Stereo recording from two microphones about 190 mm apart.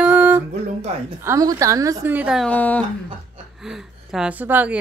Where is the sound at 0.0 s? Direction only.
10° right (ahead or behind).